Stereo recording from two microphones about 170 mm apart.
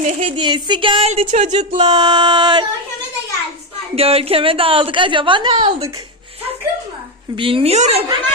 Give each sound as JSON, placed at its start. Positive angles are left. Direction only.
{"t": 0.0, "sound": "a woman's voice", "side_deg": -35}
{"t": 1.8, "sound": "music", "side_deg": -25}
{"t": 3.9, "sound": "a woman's voice", "side_deg": -35}
{"t": 7.3, "sound": "a woman's voice", "side_deg": -30}